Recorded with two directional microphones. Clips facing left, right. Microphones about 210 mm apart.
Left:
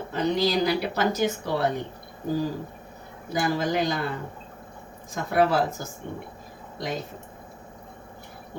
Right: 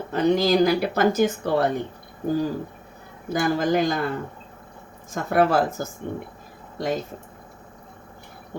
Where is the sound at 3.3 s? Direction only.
50° right (ahead or behind).